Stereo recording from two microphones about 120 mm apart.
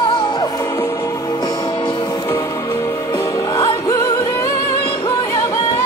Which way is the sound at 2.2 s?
20° left (ahead or behind).